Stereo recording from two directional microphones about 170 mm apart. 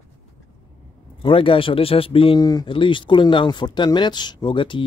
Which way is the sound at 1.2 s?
30° left (ahead or behind).